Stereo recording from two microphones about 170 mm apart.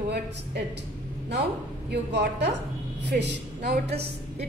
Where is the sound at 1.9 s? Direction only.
90° right.